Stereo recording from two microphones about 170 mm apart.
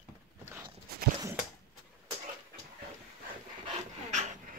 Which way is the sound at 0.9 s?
65° right (ahead or behind).